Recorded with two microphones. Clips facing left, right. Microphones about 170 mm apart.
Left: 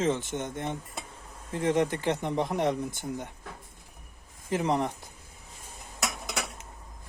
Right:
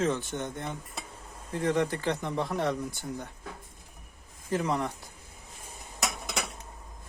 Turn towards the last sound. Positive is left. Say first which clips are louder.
# even
turn(degrees=0)  # may be behind; listen again after turning